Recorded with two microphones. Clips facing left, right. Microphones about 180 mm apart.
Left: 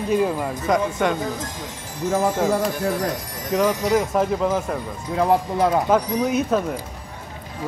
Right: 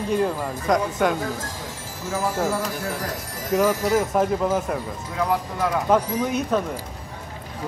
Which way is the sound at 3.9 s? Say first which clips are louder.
Left 1 dB; centre (ahead or behind).